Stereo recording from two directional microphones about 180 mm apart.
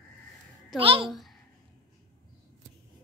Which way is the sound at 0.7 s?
30° right (ahead or behind).